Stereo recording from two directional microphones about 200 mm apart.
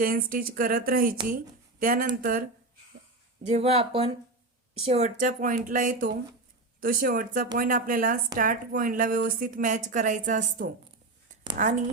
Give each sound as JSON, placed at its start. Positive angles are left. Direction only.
{"t": 0.0, "sound": "a woman's voice", "side_deg": -45}
{"t": 3.4, "sound": "a woman's voice", "side_deg": -30}